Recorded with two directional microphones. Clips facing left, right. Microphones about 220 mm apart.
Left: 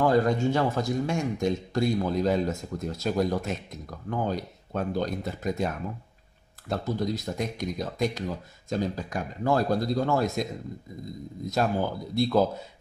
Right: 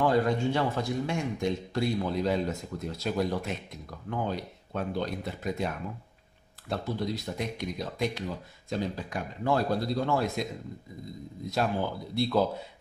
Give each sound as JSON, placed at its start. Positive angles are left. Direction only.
{"t": 0.0, "sound": "a man's voice", "side_deg": 45}
{"t": 6.7, "sound": "a man's voice", "side_deg": 45}
{"t": 11.4, "sound": "a man's voice", "side_deg": 45}